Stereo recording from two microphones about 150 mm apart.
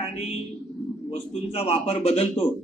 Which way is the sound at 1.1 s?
40° left (ahead or behind).